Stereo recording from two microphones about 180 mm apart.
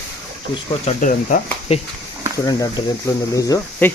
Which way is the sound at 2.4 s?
20° left (ahead or behind).